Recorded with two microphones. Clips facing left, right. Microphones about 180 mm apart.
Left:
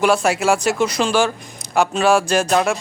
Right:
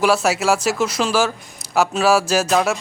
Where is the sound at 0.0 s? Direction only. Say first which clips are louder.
Left 1 dB; centre (ahead or behind).